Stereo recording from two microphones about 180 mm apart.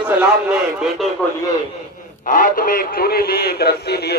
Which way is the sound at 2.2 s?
50° left (ahead or behind).